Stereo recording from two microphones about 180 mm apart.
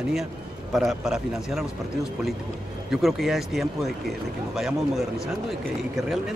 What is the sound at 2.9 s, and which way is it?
Speech, centre (ahead or behind).